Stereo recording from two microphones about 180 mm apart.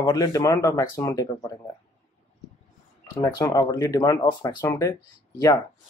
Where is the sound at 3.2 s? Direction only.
20° left (ahead or behind).